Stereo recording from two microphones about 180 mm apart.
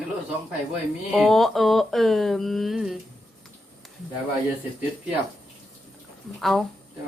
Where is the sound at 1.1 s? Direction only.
Centre (ahead or behind).